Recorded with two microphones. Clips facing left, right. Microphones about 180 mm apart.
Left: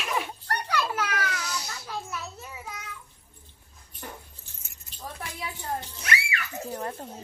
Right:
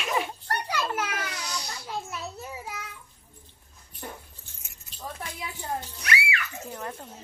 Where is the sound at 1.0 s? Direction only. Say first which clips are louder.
Left 2 dB; 15° right (ahead or behind).